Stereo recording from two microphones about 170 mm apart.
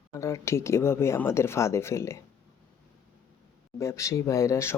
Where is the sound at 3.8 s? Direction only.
15° left (ahead or behind).